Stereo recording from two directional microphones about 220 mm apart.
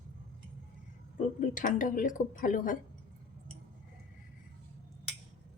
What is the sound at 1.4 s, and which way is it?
Speech, 35° left (ahead or behind).